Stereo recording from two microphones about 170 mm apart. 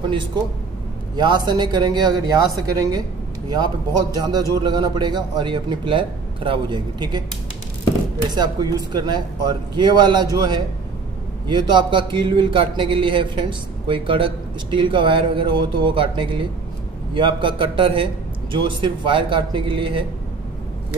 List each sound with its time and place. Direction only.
1.1 s speech: 25° right (ahead or behind)
8.3 s speech: 25° right (ahead or behind)